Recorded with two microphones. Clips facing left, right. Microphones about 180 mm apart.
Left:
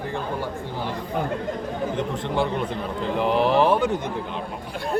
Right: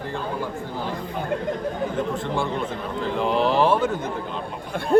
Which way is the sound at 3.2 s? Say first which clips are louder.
Left 1 dB; 15° left (ahead or behind).